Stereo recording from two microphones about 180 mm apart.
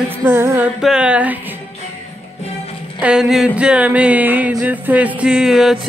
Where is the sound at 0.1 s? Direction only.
10° right (ahead or behind).